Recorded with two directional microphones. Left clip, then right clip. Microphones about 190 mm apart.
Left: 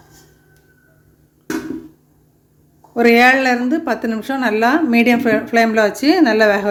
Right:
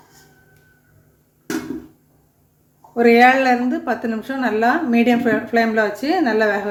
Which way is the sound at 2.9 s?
25° left (ahead or behind).